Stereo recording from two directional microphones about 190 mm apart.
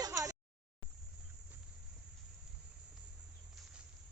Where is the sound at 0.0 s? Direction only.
15° right (ahead or behind).